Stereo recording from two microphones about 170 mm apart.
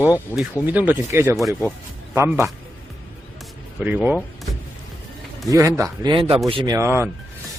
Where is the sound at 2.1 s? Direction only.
15° right (ahead or behind).